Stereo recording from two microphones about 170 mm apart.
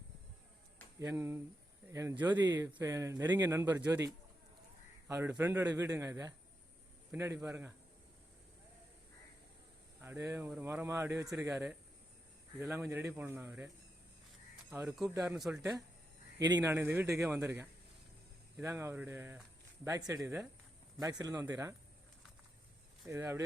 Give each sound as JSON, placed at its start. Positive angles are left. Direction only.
{"t": 0.9, "sound": "a man's voice", "side_deg": -15}
{"t": 10.0, "sound": "a man's voice", "side_deg": -15}
{"t": 11.3, "sound": "speech", "side_deg": 0}
{"t": 12.5, "sound": "a man's voice", "side_deg": -15}
{"t": 15.0, "sound": "speech", "side_deg": -20}
{"t": 16.6, "sound": "a man's voice", "side_deg": -15}
{"t": 23.0, "sound": "a man's voice", "side_deg": -15}